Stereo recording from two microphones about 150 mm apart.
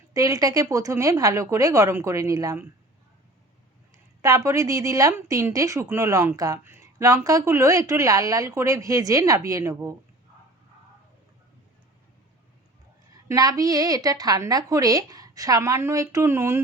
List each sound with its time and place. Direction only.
0.1 s a woman's voice: 20° right (ahead or behind)
4.2 s a woman's voice: 20° right (ahead or behind)
13.2 s a woman's voice: 25° right (ahead or behind)